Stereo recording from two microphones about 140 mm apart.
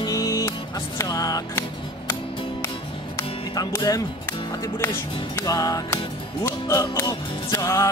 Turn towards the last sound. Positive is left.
turn(degrees=20)  # may be behind; listen again after turning